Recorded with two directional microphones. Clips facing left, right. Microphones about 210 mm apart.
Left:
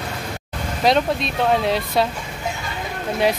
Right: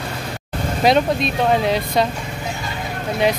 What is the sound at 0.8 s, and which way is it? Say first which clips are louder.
Speech: right 2 dB; centre (ahead or behind).